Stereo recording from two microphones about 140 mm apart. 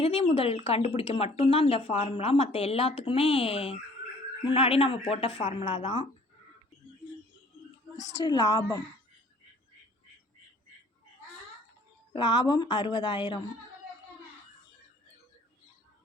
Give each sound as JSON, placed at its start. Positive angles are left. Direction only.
{"t": 0.0, "sound": "speech", "side_deg": 40}
{"t": 7.9, "sound": "a woman's voice", "side_deg": 30}
{"t": 12.1, "sound": "speech", "side_deg": 30}